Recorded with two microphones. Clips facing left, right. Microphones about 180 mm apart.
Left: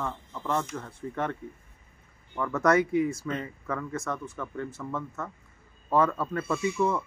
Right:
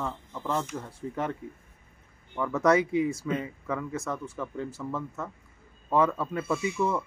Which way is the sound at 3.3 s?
10° right (ahead or behind).